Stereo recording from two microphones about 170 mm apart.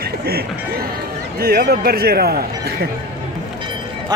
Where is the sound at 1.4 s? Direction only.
65° right (ahead or behind).